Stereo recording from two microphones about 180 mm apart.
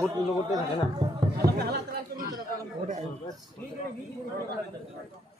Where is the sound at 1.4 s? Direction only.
60° right (ahead or behind).